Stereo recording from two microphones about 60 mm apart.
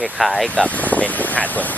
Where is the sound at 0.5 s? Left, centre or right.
Left.